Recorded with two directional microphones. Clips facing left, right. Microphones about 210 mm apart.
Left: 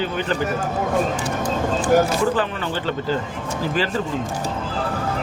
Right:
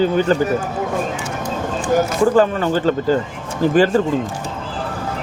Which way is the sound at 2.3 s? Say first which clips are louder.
Right 9 dB; 45° right (ahead or behind).